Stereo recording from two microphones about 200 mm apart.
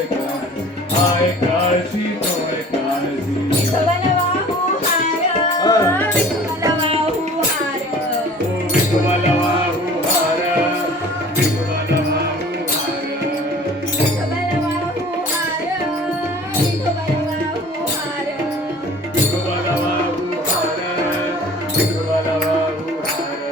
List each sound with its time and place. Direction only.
5.6 s music: 15° left (ahead or behind)
6.6 s music: 20° right (ahead or behind)